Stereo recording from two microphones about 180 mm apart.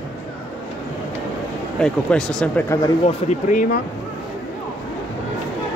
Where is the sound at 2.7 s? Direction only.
15° left (ahead or behind).